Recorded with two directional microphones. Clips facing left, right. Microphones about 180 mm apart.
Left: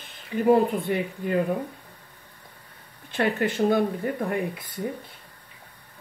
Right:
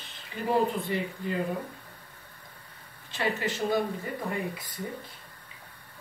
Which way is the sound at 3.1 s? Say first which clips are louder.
Left 6 dB; 55° left (ahead or behind).